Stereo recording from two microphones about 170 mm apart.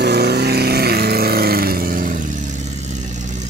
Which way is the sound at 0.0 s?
75° right (ahead or behind).